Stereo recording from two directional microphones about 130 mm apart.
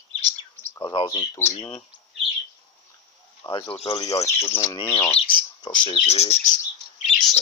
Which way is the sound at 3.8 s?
30° left (ahead or behind).